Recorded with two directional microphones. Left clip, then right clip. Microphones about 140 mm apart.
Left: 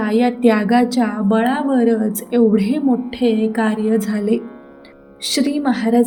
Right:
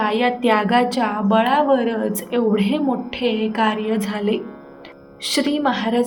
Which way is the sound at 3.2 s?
75° left (ahead or behind).